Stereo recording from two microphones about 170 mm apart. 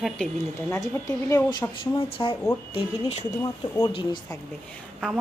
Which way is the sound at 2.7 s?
35° left (ahead or behind).